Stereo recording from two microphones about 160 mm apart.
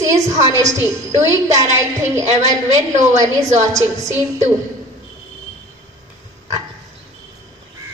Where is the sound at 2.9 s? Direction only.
45° right (ahead or behind).